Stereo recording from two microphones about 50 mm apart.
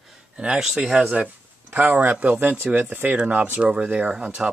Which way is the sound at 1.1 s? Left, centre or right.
Right.